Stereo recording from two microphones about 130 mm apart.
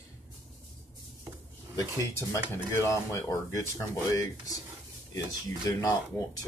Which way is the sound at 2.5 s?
20° left (ahead or behind).